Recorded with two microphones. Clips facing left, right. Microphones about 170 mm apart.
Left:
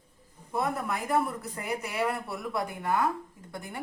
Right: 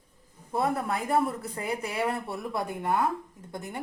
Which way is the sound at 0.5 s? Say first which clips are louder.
Right 2 dB; 30° right (ahead or behind).